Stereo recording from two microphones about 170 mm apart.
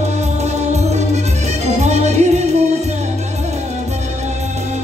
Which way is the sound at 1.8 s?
40° right (ahead or behind).